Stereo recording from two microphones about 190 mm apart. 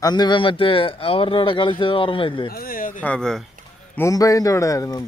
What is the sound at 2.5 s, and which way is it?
Speech, 50° left (ahead or behind).